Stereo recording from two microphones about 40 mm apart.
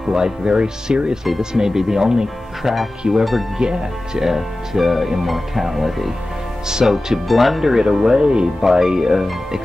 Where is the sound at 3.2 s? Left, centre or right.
Centre.